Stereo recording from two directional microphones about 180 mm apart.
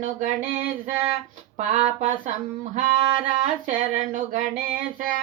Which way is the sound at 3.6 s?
45° right (ahead or behind).